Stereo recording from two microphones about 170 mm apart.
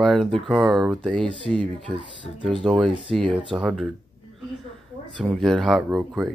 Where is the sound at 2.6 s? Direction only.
Centre (ahead or behind).